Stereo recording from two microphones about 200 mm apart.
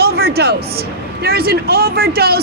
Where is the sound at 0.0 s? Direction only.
50° right (ahead or behind).